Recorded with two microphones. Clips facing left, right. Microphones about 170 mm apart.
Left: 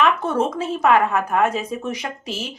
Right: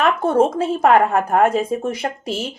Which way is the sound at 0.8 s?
50° right (ahead or behind).